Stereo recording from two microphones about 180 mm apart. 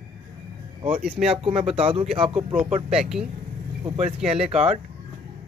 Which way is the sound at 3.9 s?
40° right (ahead or behind).